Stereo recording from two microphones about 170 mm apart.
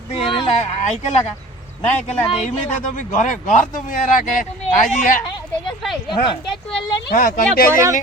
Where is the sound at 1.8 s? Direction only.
40° left (ahead or behind).